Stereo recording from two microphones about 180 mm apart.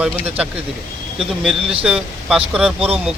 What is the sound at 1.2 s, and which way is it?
Speech, centre (ahead or behind).